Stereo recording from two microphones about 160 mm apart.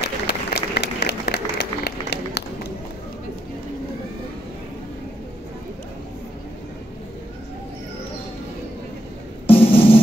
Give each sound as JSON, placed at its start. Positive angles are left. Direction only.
{"t": 0.0, "sound": "applause", "side_deg": 90}
{"t": 9.5, "sound": "music", "side_deg": 35}